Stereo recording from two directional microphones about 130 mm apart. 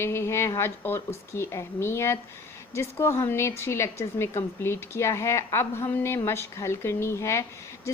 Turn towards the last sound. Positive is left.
turn(degrees=20)  # may be behind; listen again after turning